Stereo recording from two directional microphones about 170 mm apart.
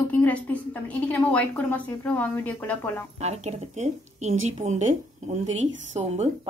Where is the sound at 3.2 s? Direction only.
40° right (ahead or behind).